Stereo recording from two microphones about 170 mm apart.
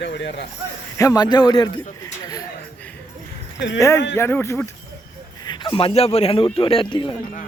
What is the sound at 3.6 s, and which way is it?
Speech, 90° left.